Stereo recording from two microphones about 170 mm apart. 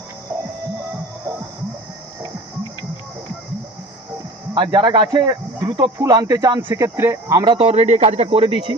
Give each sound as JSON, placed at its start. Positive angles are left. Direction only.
{"t": 4.5, "sound": "speech", "side_deg": -25}